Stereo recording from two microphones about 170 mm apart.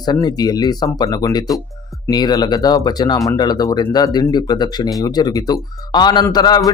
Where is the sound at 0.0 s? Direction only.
25° left (ahead or behind).